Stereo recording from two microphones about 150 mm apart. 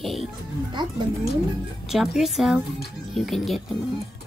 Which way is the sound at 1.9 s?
Centre (ahead or behind).